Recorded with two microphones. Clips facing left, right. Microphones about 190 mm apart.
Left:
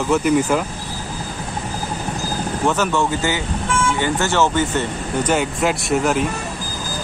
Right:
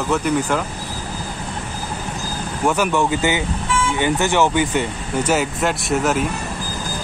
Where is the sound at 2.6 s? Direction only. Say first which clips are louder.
Right 1 dB; 15° right (ahead or behind).